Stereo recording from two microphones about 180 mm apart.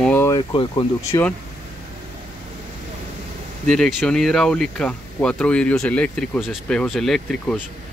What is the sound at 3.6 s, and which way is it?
Speech, 5° left (ahead or behind).